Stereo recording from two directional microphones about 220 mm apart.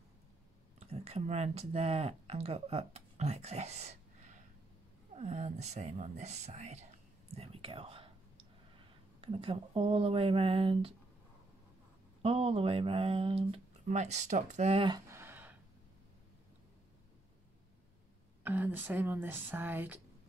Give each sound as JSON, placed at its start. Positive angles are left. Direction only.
{"t": 0.7, "sound": "speech", "side_deg": -30}
{"t": 9.2, "sound": "speech", "side_deg": -25}
{"t": 12.2, "sound": "speech", "side_deg": -25}
{"t": 15.0, "sound": "a sound", "side_deg": -10}
{"t": 18.4, "sound": "speech", "side_deg": -10}